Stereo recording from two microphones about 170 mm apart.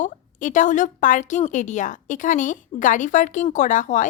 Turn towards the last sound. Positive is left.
turn(degrees=45)  # may be behind; listen again after turning